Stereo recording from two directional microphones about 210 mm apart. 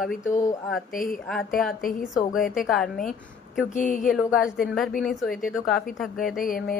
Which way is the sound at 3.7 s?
40° left (ahead or behind).